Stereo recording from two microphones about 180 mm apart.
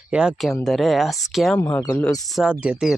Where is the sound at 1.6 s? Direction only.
15° left (ahead or behind).